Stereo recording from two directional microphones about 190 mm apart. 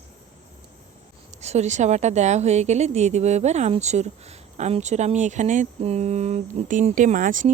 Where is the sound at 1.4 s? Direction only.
35° right (ahead or behind).